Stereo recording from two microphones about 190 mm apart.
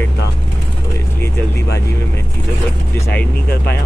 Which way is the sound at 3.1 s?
55° left (ahead or behind).